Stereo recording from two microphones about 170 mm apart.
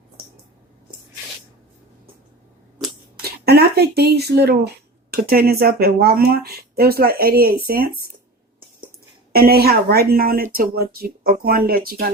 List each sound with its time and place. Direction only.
3.2 s speech: 65° right (ahead or behind)
9.3 s speech: 65° right (ahead or behind)